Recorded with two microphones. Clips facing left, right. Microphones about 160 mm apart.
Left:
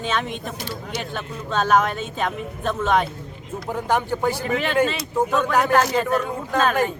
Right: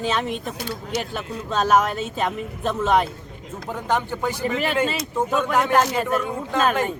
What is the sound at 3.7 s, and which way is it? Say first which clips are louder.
Speech: left 2 dB; 15° left (ahead or behind).